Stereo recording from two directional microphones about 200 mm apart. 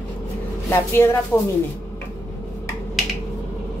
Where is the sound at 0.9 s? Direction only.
10° left (ahead or behind).